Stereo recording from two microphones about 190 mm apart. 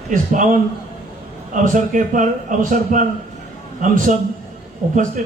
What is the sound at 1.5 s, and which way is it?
A man's voice, 45° right (ahead or behind).